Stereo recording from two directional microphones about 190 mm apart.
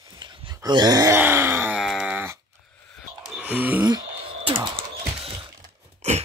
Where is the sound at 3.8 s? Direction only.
20° right (ahead or behind).